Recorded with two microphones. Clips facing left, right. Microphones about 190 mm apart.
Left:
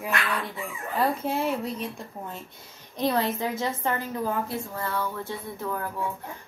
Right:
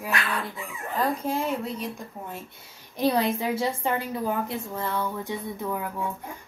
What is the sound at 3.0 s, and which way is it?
A woman's voice, 10° right (ahead or behind).